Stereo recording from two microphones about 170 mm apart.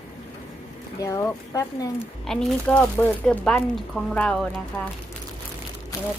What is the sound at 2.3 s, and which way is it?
Speech, 5° left (ahead or behind).